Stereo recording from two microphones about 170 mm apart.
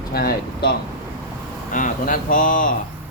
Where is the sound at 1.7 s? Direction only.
50° left (ahead or behind).